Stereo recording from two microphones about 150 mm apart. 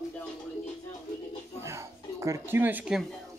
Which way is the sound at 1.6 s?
20° right (ahead or behind).